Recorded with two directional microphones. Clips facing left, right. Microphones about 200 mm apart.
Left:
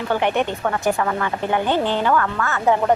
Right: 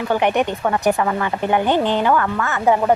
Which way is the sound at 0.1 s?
15° right (ahead or behind).